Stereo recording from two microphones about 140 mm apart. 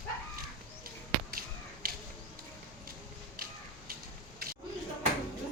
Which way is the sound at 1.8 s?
90° right.